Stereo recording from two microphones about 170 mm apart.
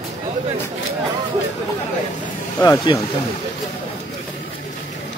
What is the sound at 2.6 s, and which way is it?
Speech, 25° left (ahead or behind).